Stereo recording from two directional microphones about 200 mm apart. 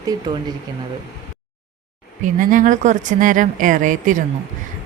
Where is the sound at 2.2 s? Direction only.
40° right (ahead or behind).